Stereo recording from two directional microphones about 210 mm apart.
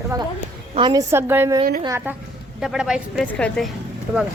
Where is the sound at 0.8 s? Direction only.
20° right (ahead or behind); by 3.7 s 5° left (ahead or behind).